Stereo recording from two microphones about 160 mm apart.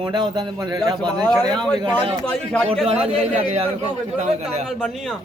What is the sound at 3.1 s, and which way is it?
A man's voice, 40° right (ahead or behind).